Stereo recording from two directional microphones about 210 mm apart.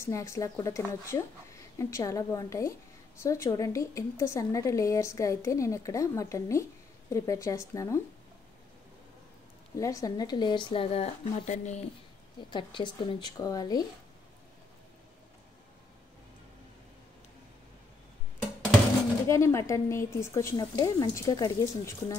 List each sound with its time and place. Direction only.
0.0 s a woman's voice: 15° left (ahead or behind)
9.8 s speech: 15° left (ahead or behind); by 11.8 s 35° left (ahead or behind)
12.4 s speech: 20° left (ahead or behind)
19.2 s a woman's voice: 15° left (ahead or behind)